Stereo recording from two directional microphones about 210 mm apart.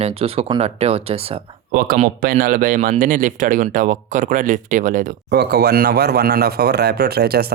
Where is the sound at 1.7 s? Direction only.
40° right (ahead or behind).